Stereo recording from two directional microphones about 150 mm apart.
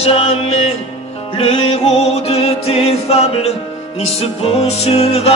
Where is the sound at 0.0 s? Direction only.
40° left (ahead or behind).